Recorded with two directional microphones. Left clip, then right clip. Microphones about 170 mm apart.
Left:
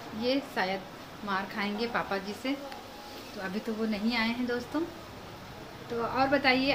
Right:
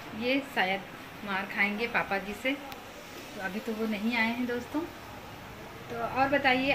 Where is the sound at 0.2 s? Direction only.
10° left (ahead or behind).